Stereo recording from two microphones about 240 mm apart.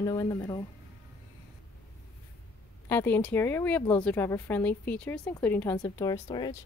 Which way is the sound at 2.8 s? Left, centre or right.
Centre.